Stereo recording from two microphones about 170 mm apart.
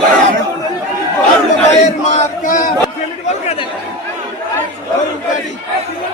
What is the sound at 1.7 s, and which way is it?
Chant, 45° left (ahead or behind).